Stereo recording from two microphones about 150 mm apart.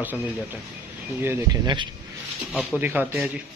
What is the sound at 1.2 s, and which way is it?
A man's voice, 15° right (ahead or behind).